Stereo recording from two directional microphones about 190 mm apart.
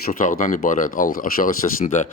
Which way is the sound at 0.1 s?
45° left (ahead or behind).